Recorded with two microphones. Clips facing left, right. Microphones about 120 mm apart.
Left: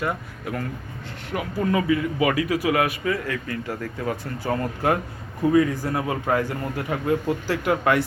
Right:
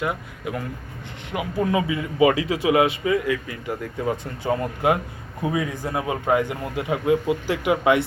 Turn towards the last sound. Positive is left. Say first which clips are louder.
# right 2 dB
turn(degrees=-15)  # may be behind; listen again after turning